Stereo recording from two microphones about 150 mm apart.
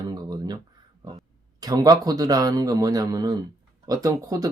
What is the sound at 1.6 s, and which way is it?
Speech, 25° right (ahead or behind).